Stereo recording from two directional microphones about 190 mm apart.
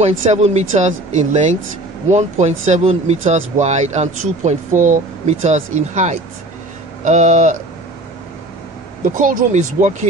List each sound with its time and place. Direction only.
0.2 s speech: 35° right (ahead or behind)
9.1 s speech: 40° right (ahead or behind)